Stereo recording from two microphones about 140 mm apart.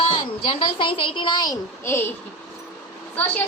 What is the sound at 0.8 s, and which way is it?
A woman's voice, 35° left (ahead or behind).